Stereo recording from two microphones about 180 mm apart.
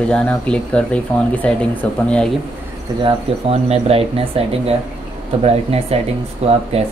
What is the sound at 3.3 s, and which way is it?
Speech, 30° right (ahead or behind).